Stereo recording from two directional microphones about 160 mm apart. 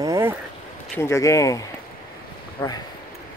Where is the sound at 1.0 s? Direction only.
20° left (ahead or behind).